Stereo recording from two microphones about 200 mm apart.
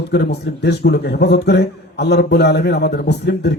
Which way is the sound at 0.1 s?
55° left (ahead or behind).